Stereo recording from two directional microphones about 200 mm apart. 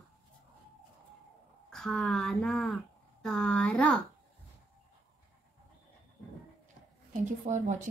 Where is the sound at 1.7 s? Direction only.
Centre (ahead or behind).